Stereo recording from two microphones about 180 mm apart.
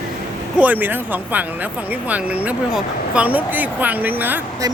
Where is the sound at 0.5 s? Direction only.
10° right (ahead or behind).